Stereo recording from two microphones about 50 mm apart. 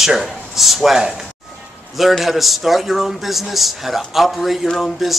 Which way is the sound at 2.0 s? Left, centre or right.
Centre.